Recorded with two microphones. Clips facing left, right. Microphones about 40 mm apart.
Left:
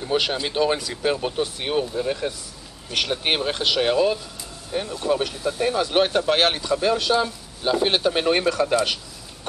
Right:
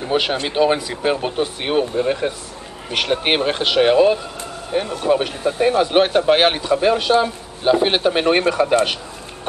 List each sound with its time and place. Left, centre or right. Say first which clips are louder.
0.1 s speech: right 3 dB; centre